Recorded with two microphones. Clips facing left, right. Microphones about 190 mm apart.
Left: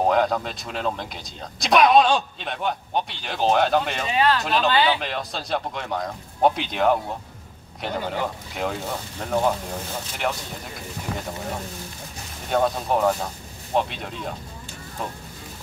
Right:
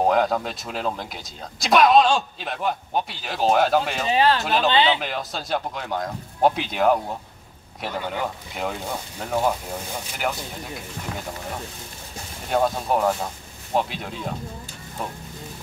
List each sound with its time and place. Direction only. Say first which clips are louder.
0.0 s speech: even; centre (ahead or behind)
4.1 s speech: right 2 dB; 30° right (ahead or behind)
4.4 s speech: even; centre (ahead or behind)
4.6 s speech: right 1 dB; 20° right (ahead or behind)
4.9 s speech: even; centre (ahead or behind)
9.2 s speech: left 1 dB; 5° right (ahead or behind)
11.0 s speech: left 3 dB; 10° left (ahead or behind)
12.4 s speech: even; centre (ahead or behind)